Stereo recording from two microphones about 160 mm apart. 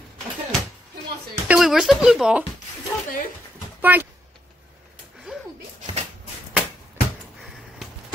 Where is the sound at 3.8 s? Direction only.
10° right (ahead or behind).